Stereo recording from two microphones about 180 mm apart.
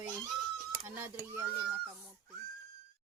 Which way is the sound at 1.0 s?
10° right (ahead or behind).